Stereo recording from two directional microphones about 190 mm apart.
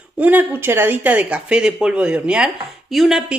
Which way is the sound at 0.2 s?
10° right (ahead or behind).